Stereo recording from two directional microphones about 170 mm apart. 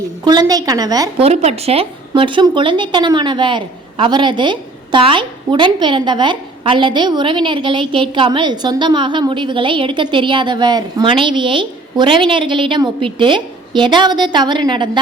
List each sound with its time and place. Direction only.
0.3 s speech: 25° right (ahead or behind)
1.2 s speech: 40° right (ahead or behind)